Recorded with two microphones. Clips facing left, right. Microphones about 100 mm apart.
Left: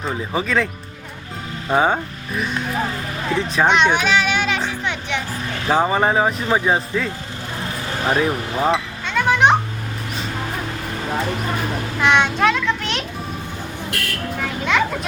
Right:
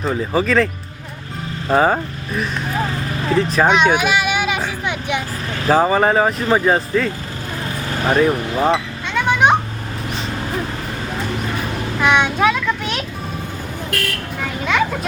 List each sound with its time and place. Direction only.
0.0 s speech: centre (ahead or behind)
1.7 s speech: centre (ahead or behind)
3.3 s music: centre (ahead or behind)
5.6 s speech: centre (ahead or behind)
8.1 s children playing: centre (ahead or behind)
11.9 s a sound: 5° right (ahead or behind)
14.6 s children playing: centre (ahead or behind)